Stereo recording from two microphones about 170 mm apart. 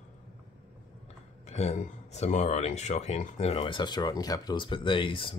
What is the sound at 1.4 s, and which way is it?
Speech, 40° left (ahead or behind).